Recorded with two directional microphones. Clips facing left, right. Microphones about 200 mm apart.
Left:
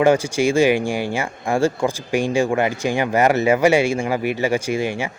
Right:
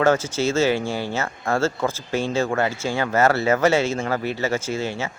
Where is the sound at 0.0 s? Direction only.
15° left (ahead or behind).